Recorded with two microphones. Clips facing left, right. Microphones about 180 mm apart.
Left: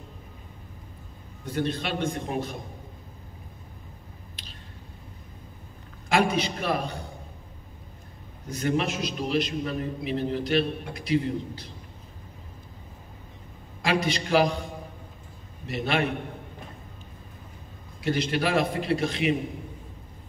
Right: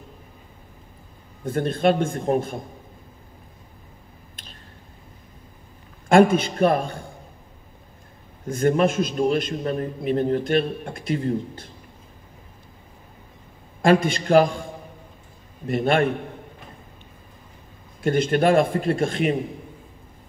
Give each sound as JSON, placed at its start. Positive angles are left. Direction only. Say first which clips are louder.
{"t": 1.4, "sound": "a man's voice", "louder": "right 8 dB", "side_deg": -50}
{"t": 4.4, "sound": "squish", "louder": "right 4 dB", "side_deg": -50}
{"t": 6.0, "sound": "a man's voice", "louder": "right 8 dB", "side_deg": -50}
{"t": 8.5, "sound": "a man's voice", "louder": "right 7 dB", "side_deg": -50}
{"t": 13.8, "sound": "a man's voice", "louder": "right 8 dB", "side_deg": -50}
{"t": 18.0, "sound": "a man's voice", "louder": "right 7 dB", "side_deg": -50}